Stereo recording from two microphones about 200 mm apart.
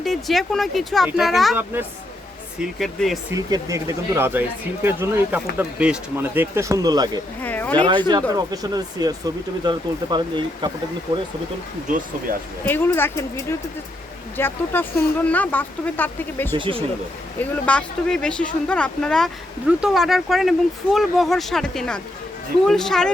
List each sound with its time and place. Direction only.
0.0 s speech: centre (ahead or behind)
3.3 s speech: 15° right (ahead or behind)
7.4 s speech: 10° left (ahead or behind)
7.8 s speech: 20° right (ahead or behind)
12.6 s speech: 10° left (ahead or behind)
16.6 s speech: 25° right (ahead or behind)
17.4 s speech: 5° left (ahead or behind)